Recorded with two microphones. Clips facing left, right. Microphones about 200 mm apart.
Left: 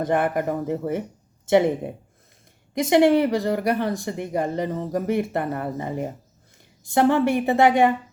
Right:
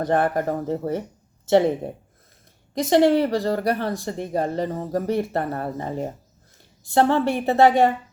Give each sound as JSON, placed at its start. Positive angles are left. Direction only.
{"t": 0.0, "sound": "speech", "side_deg": 15}
{"t": 2.9, "sound": "speech", "side_deg": 20}